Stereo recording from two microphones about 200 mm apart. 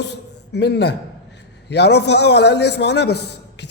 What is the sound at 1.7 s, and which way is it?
A man's voice, 55° left (ahead or behind).